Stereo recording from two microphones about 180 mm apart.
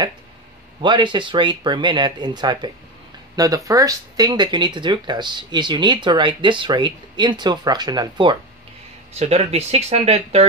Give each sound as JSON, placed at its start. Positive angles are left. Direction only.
{"t": 0.7, "sound": "speech", "side_deg": -25}
{"t": 9.2, "sound": "speech", "side_deg": -35}